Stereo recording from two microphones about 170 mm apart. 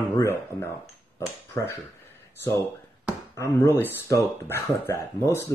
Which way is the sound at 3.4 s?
15° left (ahead or behind).